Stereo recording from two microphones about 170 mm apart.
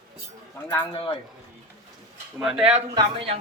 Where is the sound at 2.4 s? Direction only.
5° right (ahead or behind).